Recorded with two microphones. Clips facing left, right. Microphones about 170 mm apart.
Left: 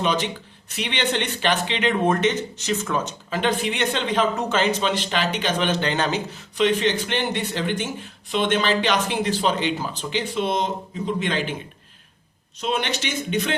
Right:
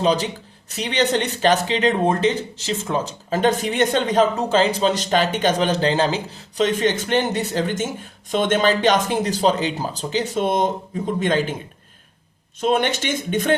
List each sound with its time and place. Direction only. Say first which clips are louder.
0.0 s speech: right 4 dB; 35° right (ahead or behind)
12.5 s speech: right 6 dB; 50° right (ahead or behind)